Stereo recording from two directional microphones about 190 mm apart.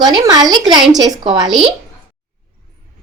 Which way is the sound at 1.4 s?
Centre (ahead or behind).